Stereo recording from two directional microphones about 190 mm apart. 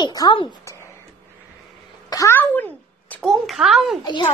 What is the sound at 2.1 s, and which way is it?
A child's voice, 15° left (ahead or behind).